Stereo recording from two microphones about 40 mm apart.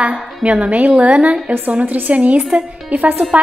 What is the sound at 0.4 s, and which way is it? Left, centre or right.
A woman's voice, right.